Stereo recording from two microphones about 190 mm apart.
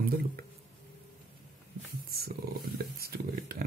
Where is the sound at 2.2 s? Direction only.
55° right (ahead or behind).